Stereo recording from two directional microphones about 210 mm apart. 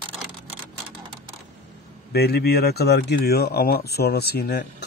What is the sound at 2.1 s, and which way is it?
Speech, 50° left (ahead or behind).